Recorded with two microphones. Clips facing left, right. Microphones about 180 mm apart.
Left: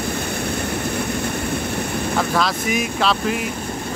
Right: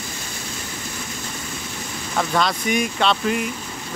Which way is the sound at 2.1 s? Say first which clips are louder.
Right 1 dB; centre (ahead or behind).